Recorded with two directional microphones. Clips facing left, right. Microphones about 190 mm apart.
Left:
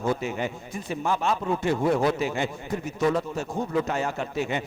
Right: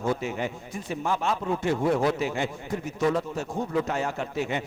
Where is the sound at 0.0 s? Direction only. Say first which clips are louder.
Left 1 dB; 30° left (ahead or behind).